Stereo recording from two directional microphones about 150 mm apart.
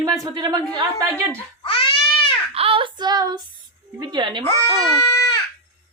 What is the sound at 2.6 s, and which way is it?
Female singing, 40° right (ahead or behind).